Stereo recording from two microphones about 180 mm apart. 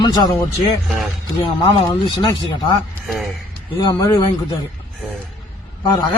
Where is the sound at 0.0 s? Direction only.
25° left (ahead or behind).